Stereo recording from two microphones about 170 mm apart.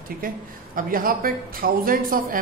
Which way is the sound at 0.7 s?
55° right (ahead or behind).